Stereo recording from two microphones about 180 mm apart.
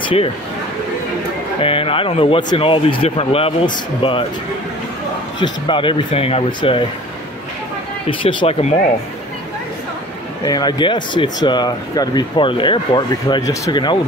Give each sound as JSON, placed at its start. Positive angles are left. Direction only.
{"t": 1.6, "sound": "speech", "side_deg": 30}
{"t": 5.4, "sound": "speech", "side_deg": 25}
{"t": 8.1, "sound": "speech", "side_deg": 30}
{"t": 10.4, "sound": "speech", "side_deg": 20}